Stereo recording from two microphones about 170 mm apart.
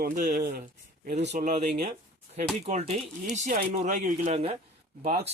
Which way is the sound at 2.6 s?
40° right (ahead or behind).